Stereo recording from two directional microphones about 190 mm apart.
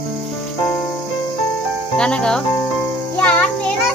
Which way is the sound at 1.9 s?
5° left (ahead or behind).